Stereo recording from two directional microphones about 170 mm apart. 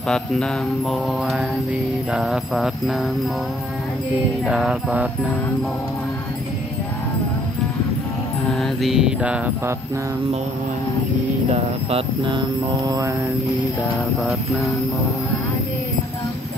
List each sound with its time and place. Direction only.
0.1 s mantra: centre (ahead or behind)
4.5 s mantra: 5° right (ahead or behind)
8.5 s mantra: centre (ahead or behind)
11.5 s speech: 30° right (ahead or behind)